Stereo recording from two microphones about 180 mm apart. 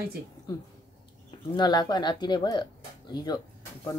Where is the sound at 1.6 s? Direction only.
25° left (ahead or behind).